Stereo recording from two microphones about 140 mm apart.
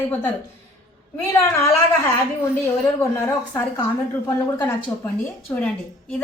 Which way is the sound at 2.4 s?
20° left (ahead or behind).